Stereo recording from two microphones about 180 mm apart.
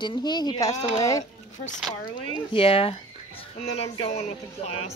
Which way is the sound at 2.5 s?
30° left (ahead or behind).